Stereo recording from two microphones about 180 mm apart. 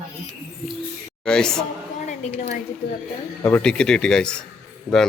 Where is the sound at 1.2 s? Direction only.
5° left (ahead or behind).